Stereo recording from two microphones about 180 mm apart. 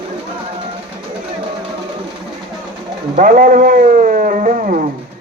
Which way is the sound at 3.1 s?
50° right (ahead or behind).